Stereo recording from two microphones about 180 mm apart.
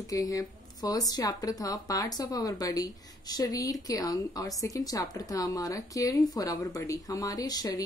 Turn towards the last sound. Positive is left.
turn(degrees=20)  # may be behind; listen again after turning